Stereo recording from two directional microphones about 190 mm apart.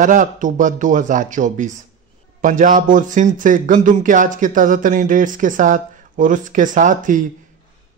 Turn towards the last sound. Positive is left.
turn(degrees=-45)  # may be behind; listen again after turning